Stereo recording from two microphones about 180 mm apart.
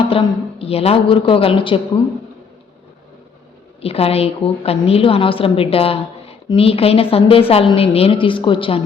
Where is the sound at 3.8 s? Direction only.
35° left (ahead or behind).